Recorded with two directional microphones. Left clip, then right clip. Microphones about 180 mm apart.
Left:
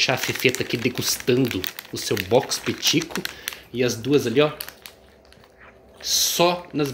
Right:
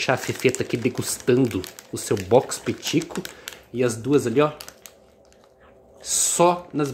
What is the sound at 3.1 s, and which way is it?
Speech, 25° right (ahead or behind).